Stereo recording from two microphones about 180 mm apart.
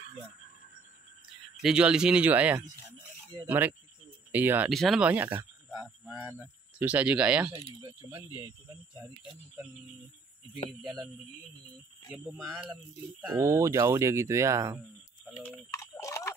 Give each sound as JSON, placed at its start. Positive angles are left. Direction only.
{"t": 1.6, "sound": "speech", "side_deg": -5}
{"t": 7.6, "sound": "speech", "side_deg": -25}
{"t": 10.8, "sound": "speech", "side_deg": -5}
{"t": 12.1, "sound": "speech", "side_deg": -5}
{"t": 15.4, "sound": "a sound", "side_deg": 15}